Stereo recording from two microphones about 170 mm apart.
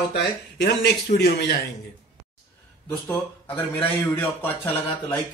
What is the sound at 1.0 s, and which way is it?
Speech, 65° left (ahead or behind).